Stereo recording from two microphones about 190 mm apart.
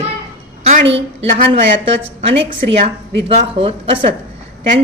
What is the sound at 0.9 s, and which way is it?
Speech, 30° right (ahead or behind).